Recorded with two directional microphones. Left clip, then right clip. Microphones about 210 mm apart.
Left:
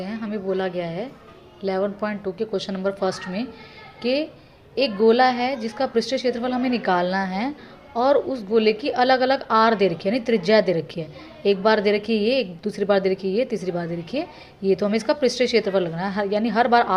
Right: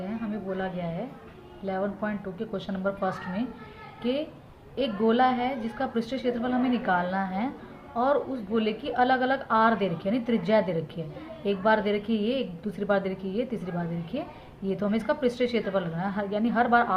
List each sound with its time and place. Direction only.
0.0 s a woman's voice: 40° left (ahead or behind)